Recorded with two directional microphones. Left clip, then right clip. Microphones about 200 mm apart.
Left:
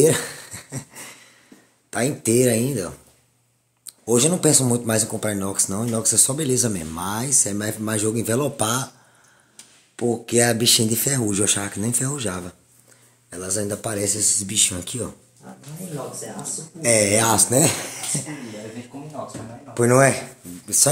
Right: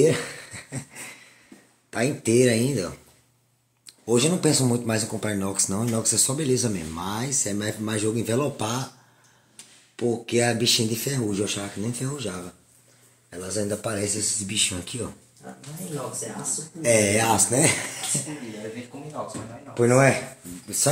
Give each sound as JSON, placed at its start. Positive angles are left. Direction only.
{"t": 0.0, "sound": "a sound", "side_deg": 20}
{"t": 1.9, "sound": "speech", "side_deg": 15}
{"t": 10.2, "sound": "speech", "side_deg": 25}
{"t": 13.3, "sound": "speech", "side_deg": 25}
{"t": 16.8, "sound": "speech", "side_deg": 25}
{"t": 19.7, "sound": "speech", "side_deg": 25}